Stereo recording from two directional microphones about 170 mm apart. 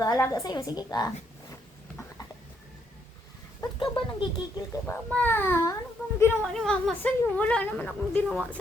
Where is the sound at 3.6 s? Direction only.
30° left (ahead or behind).